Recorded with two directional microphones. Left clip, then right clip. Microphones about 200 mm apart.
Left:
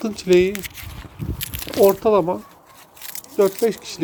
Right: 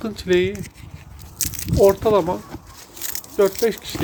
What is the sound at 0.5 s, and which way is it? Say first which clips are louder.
Speech: left 5 dB; 45° left (ahead or behind).